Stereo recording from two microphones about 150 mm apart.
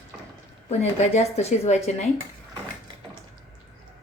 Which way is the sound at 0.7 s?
50° left (ahead or behind).